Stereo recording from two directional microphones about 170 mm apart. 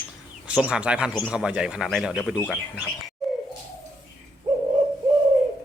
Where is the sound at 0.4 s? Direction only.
5° right (ahead or behind).